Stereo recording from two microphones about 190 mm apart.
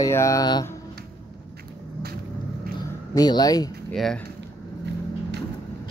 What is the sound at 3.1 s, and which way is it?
Speech, 20° left (ahead or behind).